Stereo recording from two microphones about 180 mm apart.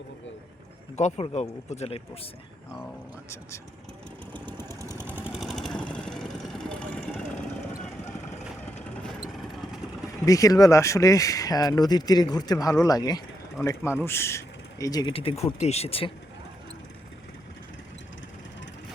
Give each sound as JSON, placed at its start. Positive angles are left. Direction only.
{"t": 0.9, "sound": "speech", "side_deg": 40}
{"t": 4.3, "sound": "vehicle", "side_deg": 10}
{"t": 4.9, "sound": "vehicle", "side_deg": -10}
{"t": 8.6, "sound": "vehicle", "side_deg": 0}
{"t": 10.2, "sound": "speech", "side_deg": 20}